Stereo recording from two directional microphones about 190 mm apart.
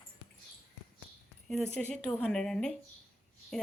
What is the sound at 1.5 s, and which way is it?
Speech, centre (ahead or behind).